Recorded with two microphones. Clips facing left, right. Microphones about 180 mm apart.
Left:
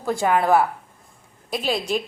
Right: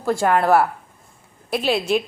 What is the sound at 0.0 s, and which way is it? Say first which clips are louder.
A woman's voice: right 2 dB; centre (ahead or behind).